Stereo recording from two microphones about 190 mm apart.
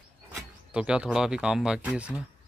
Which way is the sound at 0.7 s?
5° right (ahead or behind).